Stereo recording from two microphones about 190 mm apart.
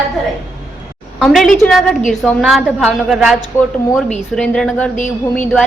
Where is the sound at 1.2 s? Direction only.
Centre (ahead or behind).